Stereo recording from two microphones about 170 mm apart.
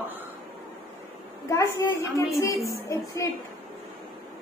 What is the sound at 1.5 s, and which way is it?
A child's voice, 15° left (ahead or behind).